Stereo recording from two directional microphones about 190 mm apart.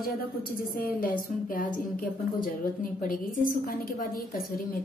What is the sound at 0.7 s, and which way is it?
A woman's voice, 50° left (ahead or behind).